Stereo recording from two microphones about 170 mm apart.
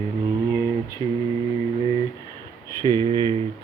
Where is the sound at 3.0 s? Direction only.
30° right (ahead or behind).